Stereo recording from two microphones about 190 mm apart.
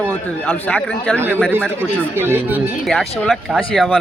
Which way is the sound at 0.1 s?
10° left (ahead or behind).